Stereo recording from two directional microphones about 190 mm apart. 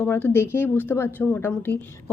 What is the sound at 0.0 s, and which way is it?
A woman's voice, 15° left (ahead or behind).